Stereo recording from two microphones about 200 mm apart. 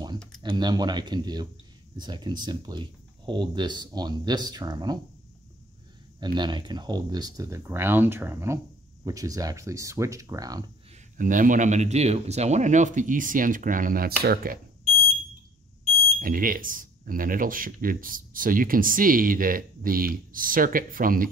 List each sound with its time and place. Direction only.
0.4 s speech: 20° right (ahead or behind)
6.1 s speech: 20° right (ahead or behind)
11.1 s speech: 40° right (ahead or behind)
16.2 s speech: 45° right (ahead or behind)